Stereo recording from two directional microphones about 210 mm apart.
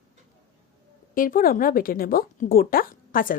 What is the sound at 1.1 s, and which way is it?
Speech, 40° left (ahead or behind).